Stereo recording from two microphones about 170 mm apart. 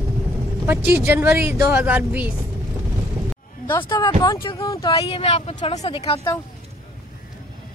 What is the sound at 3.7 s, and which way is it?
Speech, 25° left (ahead or behind).